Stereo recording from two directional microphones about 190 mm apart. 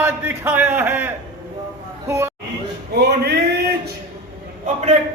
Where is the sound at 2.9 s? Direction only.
55° right (ahead or behind).